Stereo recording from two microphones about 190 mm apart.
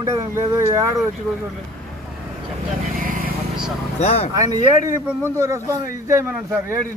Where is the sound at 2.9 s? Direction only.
45° right (ahead or behind).